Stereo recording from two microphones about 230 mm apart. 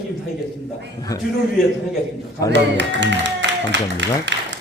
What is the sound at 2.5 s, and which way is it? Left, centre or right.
Speech, right.